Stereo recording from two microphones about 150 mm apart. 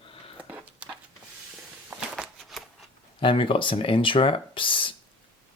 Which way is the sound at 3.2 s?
35° left (ahead or behind).